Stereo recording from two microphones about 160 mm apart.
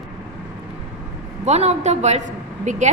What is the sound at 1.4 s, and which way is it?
A woman's voice, 45° right (ahead or behind).